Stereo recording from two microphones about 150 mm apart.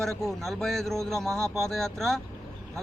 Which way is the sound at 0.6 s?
Centre (ahead or behind).